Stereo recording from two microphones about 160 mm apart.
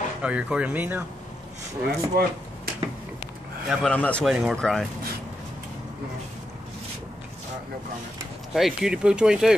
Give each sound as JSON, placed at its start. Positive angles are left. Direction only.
{"t": 0.2, "sound": "speech", "side_deg": -5}
{"t": 1.9, "sound": "speech", "side_deg": -80}
{"t": 3.6, "sound": "a man's voice", "side_deg": 5}
{"t": 4.2, "sound": "speech", "side_deg": -5}
{"t": 8.5, "sound": "speech", "side_deg": 0}